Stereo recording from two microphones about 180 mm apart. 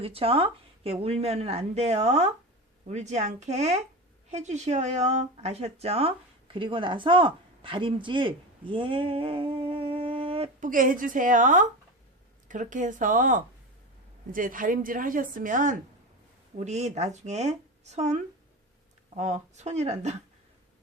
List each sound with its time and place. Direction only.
0.0 s a woman's voice: 30° right (ahead or behind)
10.6 s a woman's voice: 50° right (ahead or behind)